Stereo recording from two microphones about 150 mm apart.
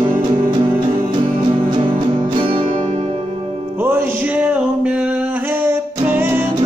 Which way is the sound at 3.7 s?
15° right (ahead or behind).